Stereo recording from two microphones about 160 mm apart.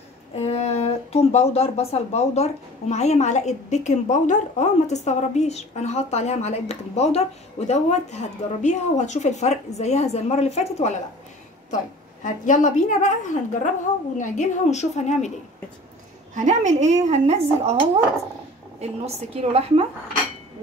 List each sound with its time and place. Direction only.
0.4 s speech: 40° left (ahead or behind)
16.3 s a woman's voice: 50° right (ahead or behind)